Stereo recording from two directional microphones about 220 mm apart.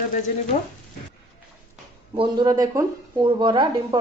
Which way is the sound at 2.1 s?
20° right (ahead or behind).